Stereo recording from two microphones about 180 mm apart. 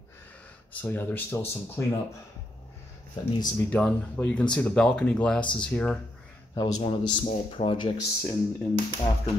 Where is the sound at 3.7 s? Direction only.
5° left (ahead or behind).